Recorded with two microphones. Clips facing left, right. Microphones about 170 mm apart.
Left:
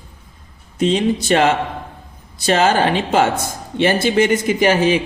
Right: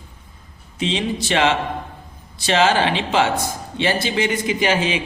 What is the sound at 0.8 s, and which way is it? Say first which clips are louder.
Speech: left 6 dB; 45° left (ahead or behind).